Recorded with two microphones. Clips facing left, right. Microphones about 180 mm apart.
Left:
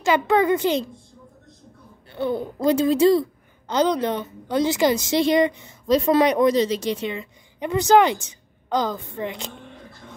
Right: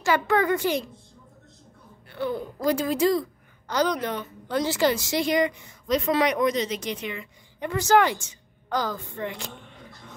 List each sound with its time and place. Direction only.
0.0 s a woman's voice: 20° left (ahead or behind)
2.0 s a woman's voice: 25° left (ahead or behind)